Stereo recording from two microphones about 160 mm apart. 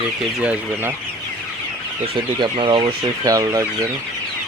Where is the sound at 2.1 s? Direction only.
30° right (ahead or behind).